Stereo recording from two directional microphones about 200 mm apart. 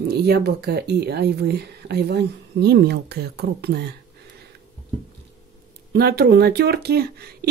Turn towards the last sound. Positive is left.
turn(degrees=-50)  # may be behind; listen again after turning